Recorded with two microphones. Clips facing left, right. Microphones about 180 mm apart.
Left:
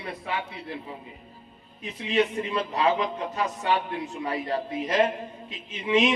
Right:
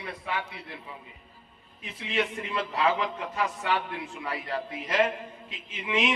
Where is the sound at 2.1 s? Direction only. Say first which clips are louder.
Left 5 dB; 25° left (ahead or behind).